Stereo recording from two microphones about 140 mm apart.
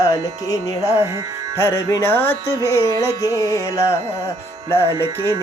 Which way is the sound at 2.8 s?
30° right (ahead or behind).